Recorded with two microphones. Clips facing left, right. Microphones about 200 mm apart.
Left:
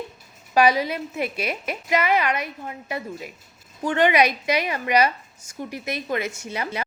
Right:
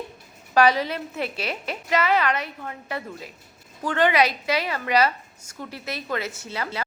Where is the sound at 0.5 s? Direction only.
10° left (ahead or behind).